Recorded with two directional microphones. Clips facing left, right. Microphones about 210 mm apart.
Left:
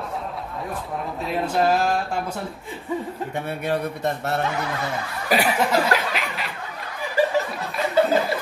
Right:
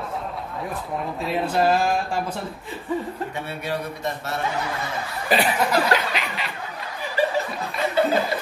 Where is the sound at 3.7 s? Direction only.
60° left (ahead or behind).